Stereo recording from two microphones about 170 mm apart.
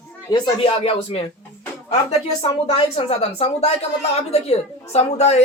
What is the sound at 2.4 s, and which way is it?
A woman's voice, 35° left (ahead or behind).